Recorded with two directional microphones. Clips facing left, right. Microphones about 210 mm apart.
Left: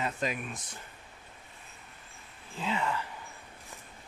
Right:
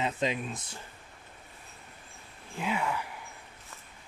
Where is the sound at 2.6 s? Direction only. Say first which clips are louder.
Right 1 dB; 10° right (ahead or behind).